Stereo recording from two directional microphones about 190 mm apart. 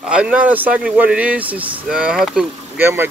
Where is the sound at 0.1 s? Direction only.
5° right (ahead or behind).